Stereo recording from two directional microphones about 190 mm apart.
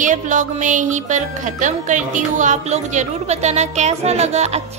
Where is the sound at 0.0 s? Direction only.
40° right (ahead or behind).